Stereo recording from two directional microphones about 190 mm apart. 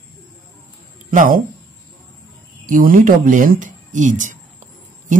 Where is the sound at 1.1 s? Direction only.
45° right (ahead or behind).